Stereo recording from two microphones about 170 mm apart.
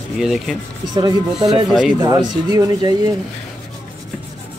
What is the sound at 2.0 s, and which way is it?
Speech, 25° right (ahead or behind).